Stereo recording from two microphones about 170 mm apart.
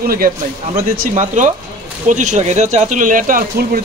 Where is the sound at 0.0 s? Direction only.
60° right (ahead or behind).